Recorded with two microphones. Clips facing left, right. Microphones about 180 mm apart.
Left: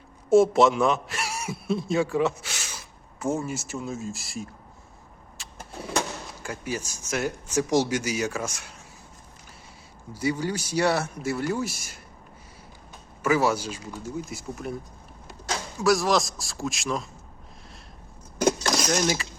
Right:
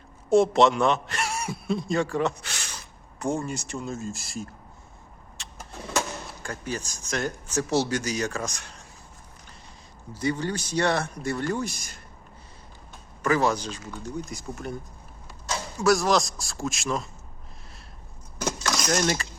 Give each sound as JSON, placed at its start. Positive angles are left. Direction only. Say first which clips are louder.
{"t": 0.3, "sound": "a man's voice", "louder": "left 1 dB", "side_deg": 0}
{"t": 5.4, "sound": "vehicle", "louder": "right 1 dB", "side_deg": 0}
{"t": 6.4, "sound": "speech", "louder": "left 1 dB", "side_deg": 10}
{"t": 10.2, "sound": "speech", "louder": "even", "side_deg": 10}
{"t": 13.2, "sound": "speech", "louder": "left 1 dB", "side_deg": 10}
{"t": 15.8, "sound": "a man's voice", "louder": "even", "side_deg": 0}
{"t": 18.4, "sound": "keys jangling", "louder": "left 6 dB", "side_deg": 30}
{"t": 18.9, "sound": "a man's voice", "louder": "right 2 dB", "side_deg": 5}